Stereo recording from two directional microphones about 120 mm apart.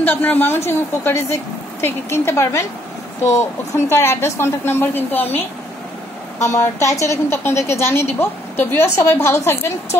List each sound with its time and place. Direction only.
0.0 s a woman's voice: 15° left (ahead or behind)
6.4 s a woman's voice: 25° left (ahead or behind)